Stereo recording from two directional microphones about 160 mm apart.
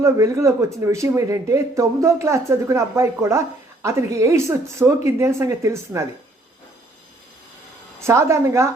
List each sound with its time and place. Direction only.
0.0 s a woman's voice: 20° right (ahead or behind)
8.0 s a woman's voice: 15° right (ahead or behind)